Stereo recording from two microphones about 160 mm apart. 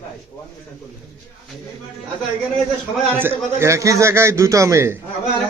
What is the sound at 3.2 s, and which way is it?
A man's voice, 15° right (ahead or behind).